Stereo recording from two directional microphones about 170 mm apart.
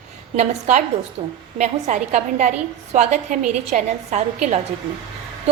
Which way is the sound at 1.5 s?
45° right (ahead or behind).